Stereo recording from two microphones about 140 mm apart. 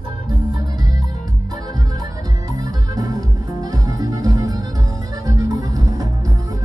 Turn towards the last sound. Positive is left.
turn(degrees=-25)  # may be behind; listen again after turning